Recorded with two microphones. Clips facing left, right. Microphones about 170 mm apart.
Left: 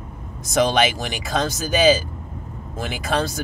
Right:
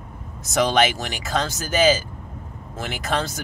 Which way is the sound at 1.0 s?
15° left (ahead or behind).